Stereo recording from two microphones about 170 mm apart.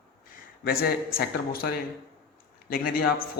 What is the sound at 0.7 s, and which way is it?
A man's voice, 65° left (ahead or behind).